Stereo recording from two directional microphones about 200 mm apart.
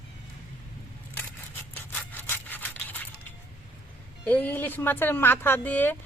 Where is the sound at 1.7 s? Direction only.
10° left (ahead or behind).